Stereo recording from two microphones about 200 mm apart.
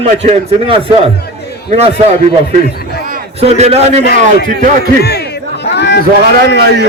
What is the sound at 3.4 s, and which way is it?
Speech, 30° right (ahead or behind).